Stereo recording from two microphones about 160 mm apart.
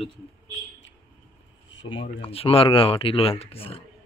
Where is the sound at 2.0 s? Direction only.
35° left (ahead or behind).